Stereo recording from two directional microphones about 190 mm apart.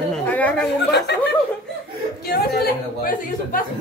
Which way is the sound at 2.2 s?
55° left (ahead or behind).